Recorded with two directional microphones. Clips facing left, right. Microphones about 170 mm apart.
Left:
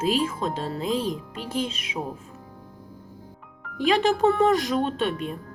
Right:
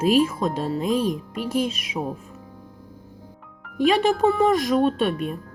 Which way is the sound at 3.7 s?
10° right (ahead or behind).